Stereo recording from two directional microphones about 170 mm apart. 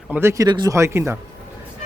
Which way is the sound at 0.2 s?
15° right (ahead or behind).